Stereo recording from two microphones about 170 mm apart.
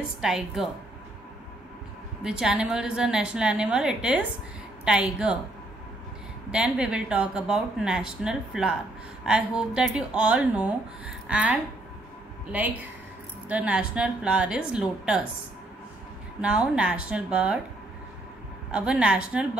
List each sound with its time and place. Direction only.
0.2 s speech: 5° right (ahead or behind)
2.2 s a woman's voice: 5° right (ahead or behind)
6.5 s a woman's voice: 5° right (ahead or behind)
16.3 s a woman's voice: 5° right (ahead or behind)
18.7 s a woman's voice: 5° right (ahead or behind)